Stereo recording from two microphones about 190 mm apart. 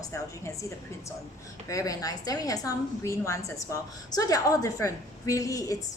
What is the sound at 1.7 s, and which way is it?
A woman's voice, 15° left (ahead or behind).